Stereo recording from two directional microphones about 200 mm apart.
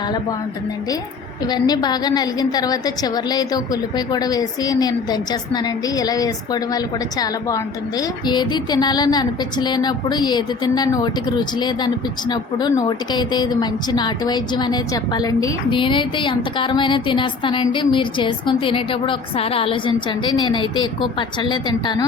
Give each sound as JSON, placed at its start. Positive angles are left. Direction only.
{"t": 1.5, "sound": "a woman's voice", "side_deg": 20}